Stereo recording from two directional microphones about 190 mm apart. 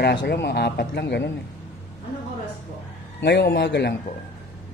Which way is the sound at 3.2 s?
60° left (ahead or behind).